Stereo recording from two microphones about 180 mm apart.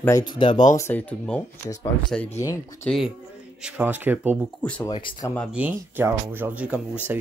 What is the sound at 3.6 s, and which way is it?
Speech, 10° right (ahead or behind).